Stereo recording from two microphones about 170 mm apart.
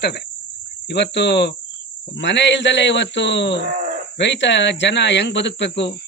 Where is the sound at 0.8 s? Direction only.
85° left.